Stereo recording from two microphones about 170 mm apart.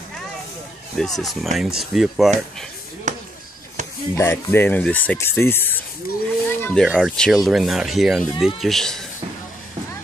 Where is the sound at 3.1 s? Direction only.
45° right (ahead or behind).